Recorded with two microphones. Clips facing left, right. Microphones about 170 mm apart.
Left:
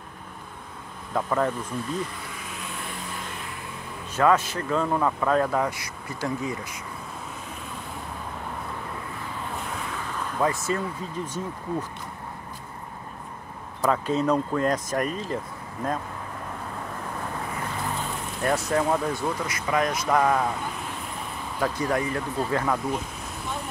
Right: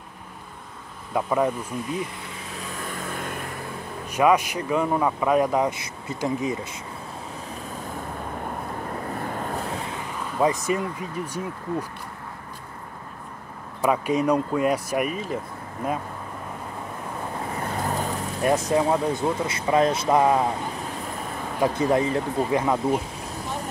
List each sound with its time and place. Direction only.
1.1 s speech: 10° right (ahead or behind)
2.9 s vehicle: 50° right (ahead or behind)
4.1 s speech: 15° right (ahead or behind)
9.0 s vehicle: 50° right (ahead or behind)
9.7 s waves: 30° right (ahead or behind)
10.4 s speech: 15° right (ahead or behind)
13.8 s speech: 15° right (ahead or behind)
17.8 s vehicle: 40° right (ahead or behind)
18.4 s speech: 20° right (ahead or behind)
21.5 s speech: 25° right (ahead or behind)